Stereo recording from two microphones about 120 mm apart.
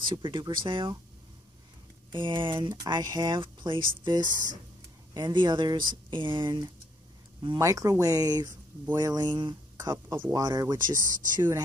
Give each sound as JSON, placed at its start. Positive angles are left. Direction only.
{"t": 0.1, "sound": "speech", "side_deg": -40}
{"t": 2.1, "sound": "speech", "side_deg": -45}
{"t": 3.3, "sound": "speech", "side_deg": -45}
{"t": 7.5, "sound": "speech", "side_deg": -25}
{"t": 10.9, "sound": "speech", "side_deg": -90}